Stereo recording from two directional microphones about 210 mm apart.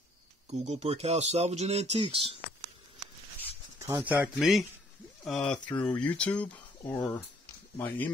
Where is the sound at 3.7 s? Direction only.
10° right (ahead or behind).